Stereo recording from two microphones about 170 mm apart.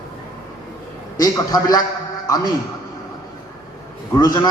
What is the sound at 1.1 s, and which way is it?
A man's voice, 20° left (ahead or behind).